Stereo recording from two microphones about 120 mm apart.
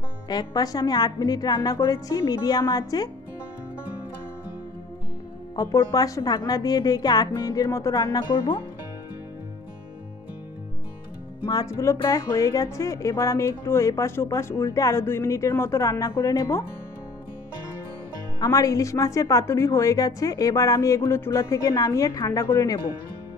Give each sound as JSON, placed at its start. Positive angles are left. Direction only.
{"t": 0.3, "sound": "a woman's voice", "side_deg": 35}
{"t": 5.6, "sound": "a woman's voice", "side_deg": 30}
{"t": 11.4, "sound": "a woman's voice", "side_deg": 30}
{"t": 18.4, "sound": "a woman's voice", "side_deg": 30}